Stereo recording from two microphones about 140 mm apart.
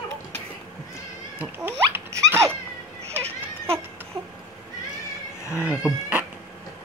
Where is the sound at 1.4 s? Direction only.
15° right (ahead or behind).